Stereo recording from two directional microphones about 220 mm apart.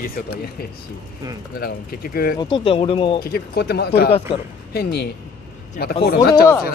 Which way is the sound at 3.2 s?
45° left (ahead or behind).